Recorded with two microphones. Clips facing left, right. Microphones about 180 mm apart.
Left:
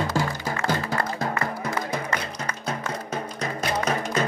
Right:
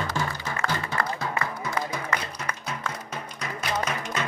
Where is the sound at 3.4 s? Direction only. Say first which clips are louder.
Left 3 dB; 40° left (ahead or behind).